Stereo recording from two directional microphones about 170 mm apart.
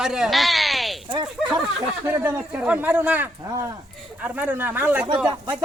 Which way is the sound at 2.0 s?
10° right (ahead or behind).